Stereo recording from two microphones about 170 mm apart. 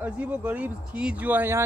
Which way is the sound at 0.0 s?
10° right (ahead or behind).